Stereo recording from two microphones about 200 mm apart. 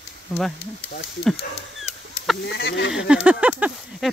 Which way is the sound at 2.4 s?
60° left (ahead or behind).